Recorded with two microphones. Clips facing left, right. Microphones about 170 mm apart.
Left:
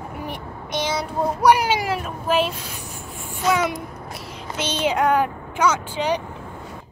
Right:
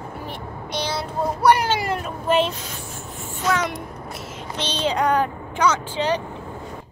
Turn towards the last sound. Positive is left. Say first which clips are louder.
# even
turn(degrees=10)  # may be behind; listen again after turning